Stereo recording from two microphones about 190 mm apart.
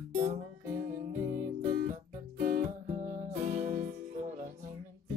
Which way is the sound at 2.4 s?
45° right (ahead or behind).